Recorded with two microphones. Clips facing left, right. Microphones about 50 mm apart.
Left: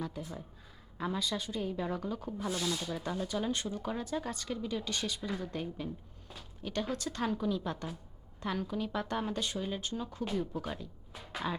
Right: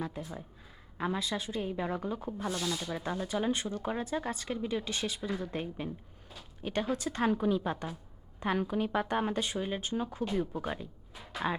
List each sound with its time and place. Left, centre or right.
0.9 s speech: right
2.4 s speech: centre
2.9 s speech: centre
5.5 s a woman's voice: right
10.3 s speech: centre
10.6 s speech: right